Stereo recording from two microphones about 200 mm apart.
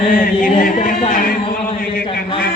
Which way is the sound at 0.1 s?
45° left (ahead or behind).